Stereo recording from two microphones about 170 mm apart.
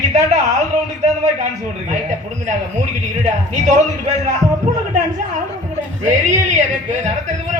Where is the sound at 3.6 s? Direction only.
45° right (ahead or behind).